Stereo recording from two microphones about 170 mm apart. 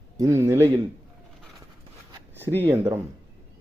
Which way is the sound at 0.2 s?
15° right (ahead or behind).